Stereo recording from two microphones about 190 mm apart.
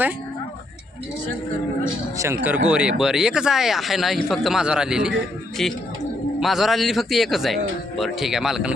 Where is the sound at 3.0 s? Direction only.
5° right (ahead or behind).